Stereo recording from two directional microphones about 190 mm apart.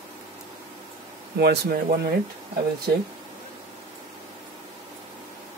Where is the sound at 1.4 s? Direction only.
55° right (ahead or behind).